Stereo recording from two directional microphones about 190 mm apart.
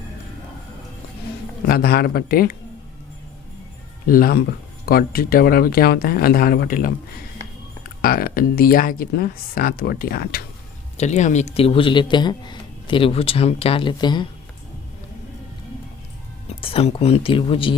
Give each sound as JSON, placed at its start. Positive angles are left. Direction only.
{"t": 1.6, "sound": "speech", "side_deg": 50}
{"t": 4.0, "sound": "speech", "side_deg": 50}
{"t": 8.0, "sound": "speech", "side_deg": 50}
{"t": 10.9, "sound": "speech", "side_deg": 35}
{"t": 16.6, "sound": "speech", "side_deg": 30}